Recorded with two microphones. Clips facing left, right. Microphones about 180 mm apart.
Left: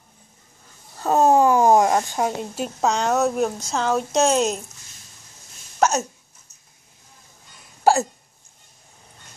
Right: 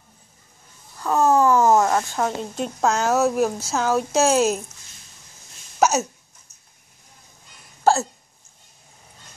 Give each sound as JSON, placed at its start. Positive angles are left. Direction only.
{"t": 0.9, "sound": "speech", "side_deg": 25}
{"t": 5.8, "sound": "hiccup", "side_deg": -5}
{"t": 7.8, "sound": "hiccup", "side_deg": 15}